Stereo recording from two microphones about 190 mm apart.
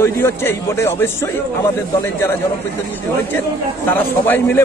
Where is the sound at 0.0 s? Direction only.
15° left (ahead or behind).